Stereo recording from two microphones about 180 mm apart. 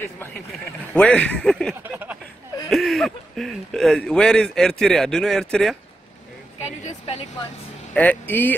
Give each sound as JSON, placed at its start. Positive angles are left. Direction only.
{"t": 0.9, "sound": "speech", "side_deg": 5}
{"t": 1.8, "sound": "a sound", "side_deg": -10}
{"t": 2.7, "sound": "speech", "side_deg": 0}
{"t": 6.6, "sound": "a woman's voice", "side_deg": 35}
{"t": 7.9, "sound": "speech", "side_deg": 10}